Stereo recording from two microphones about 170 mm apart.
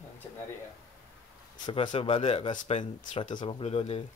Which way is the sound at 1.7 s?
30° left (ahead or behind).